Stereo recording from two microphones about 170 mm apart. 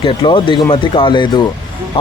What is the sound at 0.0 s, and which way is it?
Speech, 30° left (ahead or behind).